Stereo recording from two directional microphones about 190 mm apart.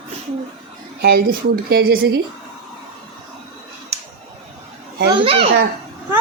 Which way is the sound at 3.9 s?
35° right (ahead or behind).